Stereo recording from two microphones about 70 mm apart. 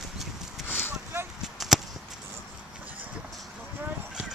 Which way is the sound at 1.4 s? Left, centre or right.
Centre.